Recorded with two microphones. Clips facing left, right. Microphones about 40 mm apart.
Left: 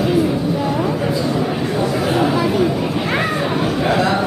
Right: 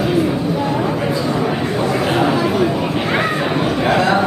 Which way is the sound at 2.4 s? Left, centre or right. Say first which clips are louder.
Even; centre.